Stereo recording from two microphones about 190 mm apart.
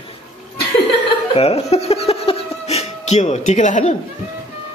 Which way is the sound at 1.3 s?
30° left (ahead or behind).